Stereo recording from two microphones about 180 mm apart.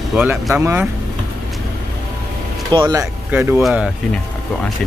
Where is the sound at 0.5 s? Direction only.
15° right (ahead or behind).